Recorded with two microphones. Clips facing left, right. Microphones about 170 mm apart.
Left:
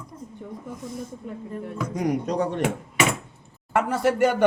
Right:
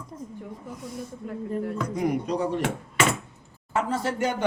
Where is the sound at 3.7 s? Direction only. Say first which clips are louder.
Left 5 dB; 70° left (ahead or behind).